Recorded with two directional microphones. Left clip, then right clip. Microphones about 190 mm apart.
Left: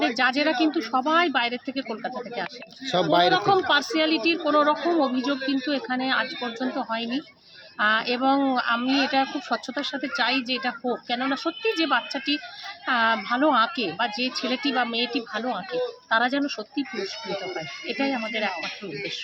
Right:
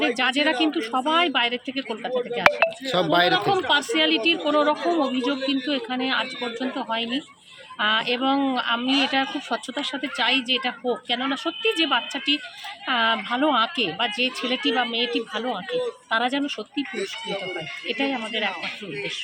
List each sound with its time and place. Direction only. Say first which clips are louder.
0.1 s speech: right 1 dB; centre (ahead or behind)
8.9 s speech: right 2 dB; 40° left (ahead or behind)
9.1 s speech: even; centre (ahead or behind)
17.8 s speech: right 1 dB; centre (ahead or behind)